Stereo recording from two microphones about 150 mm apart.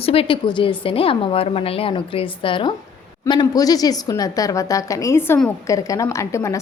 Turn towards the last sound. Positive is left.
turn(degrees=20)  # may be behind; listen again after turning